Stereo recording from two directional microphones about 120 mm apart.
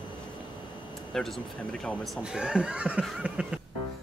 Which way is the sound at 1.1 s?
5° left (ahead or behind).